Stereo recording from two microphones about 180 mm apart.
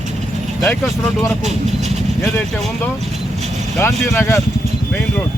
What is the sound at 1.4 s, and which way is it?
Speech, 40° right (ahead or behind).